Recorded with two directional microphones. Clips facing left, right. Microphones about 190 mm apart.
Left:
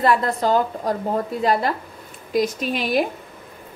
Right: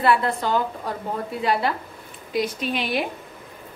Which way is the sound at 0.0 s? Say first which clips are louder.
Left 2 dB; 40° left (ahead or behind).